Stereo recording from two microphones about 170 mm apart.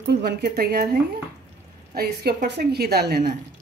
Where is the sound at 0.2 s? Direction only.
65° right (ahead or behind).